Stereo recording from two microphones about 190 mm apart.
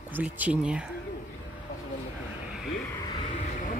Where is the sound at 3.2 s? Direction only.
40° left (ahead or behind).